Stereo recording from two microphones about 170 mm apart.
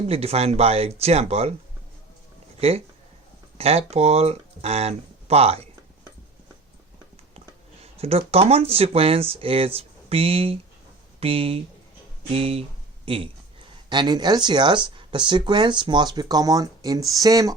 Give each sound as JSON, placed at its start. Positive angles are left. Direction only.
{"t": 0.1, "sound": "speech", "side_deg": -35}
{"t": 2.6, "sound": "speech", "side_deg": -35}
{"t": 7.9, "sound": "speech", "side_deg": -35}